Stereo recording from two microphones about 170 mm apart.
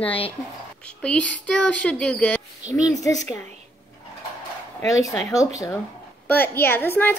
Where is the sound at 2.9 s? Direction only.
20° left (ahead or behind).